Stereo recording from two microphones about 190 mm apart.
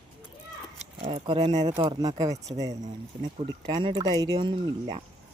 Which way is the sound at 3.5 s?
25° right (ahead or behind).